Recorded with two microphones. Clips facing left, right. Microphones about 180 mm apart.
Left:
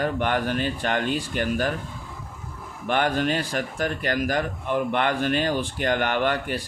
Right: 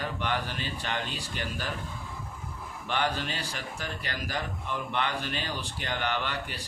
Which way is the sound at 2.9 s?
50° left (ahead or behind).